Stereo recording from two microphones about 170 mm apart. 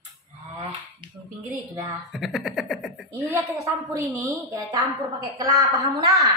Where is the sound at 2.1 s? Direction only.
Centre (ahead or behind).